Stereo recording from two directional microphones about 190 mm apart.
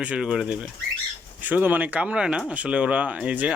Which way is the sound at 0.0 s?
5° right (ahead or behind).